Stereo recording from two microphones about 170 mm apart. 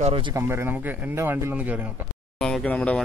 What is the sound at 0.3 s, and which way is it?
Speech, 15° right (ahead or behind).